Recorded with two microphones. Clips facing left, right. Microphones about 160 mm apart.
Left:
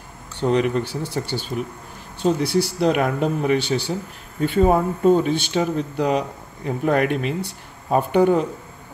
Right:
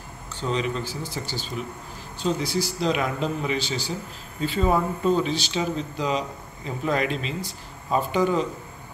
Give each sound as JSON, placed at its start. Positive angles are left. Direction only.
{"t": 0.4, "sound": "speech", "side_deg": 60}